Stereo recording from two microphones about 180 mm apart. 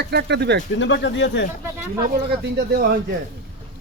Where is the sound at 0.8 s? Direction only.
90° left.